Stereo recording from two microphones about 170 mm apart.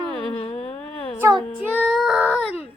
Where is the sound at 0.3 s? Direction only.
35° left (ahead or behind).